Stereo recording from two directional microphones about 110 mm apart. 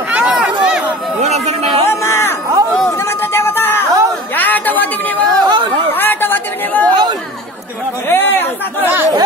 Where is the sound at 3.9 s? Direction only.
30° right (ahead or behind).